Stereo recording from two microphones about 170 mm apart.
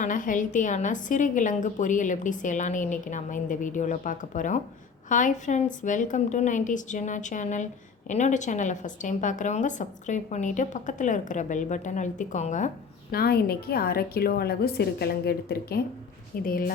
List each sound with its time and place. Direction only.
0.0 s speech: 50° left (ahead or behind)